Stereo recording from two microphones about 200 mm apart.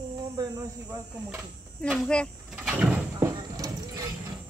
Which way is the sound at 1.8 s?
5° left (ahead or behind).